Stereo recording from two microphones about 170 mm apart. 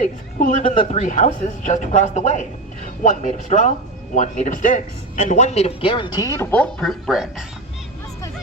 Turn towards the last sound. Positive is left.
turn(degrees=0)  # may be behind; listen again after turning